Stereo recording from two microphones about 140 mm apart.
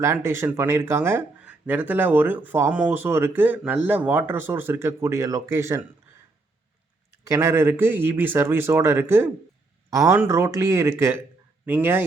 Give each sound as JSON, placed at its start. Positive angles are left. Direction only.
{"t": 0.0, "sound": "speech", "side_deg": -20}
{"t": 7.3, "sound": "speech", "side_deg": -20}